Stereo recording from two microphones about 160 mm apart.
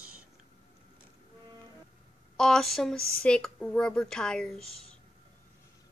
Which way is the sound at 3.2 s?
5° left (ahead or behind).